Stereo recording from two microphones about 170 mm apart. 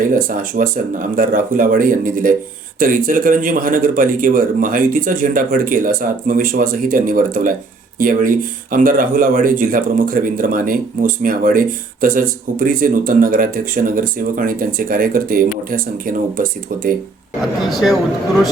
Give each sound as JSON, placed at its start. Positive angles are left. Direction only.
{"t": 0.0, "sound": "speech", "side_deg": -55}
{"t": 17.7, "sound": "speech", "side_deg": 0}